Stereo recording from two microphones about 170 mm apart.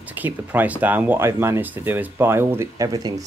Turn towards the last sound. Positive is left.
turn(degrees=-20)  # may be behind; listen again after turning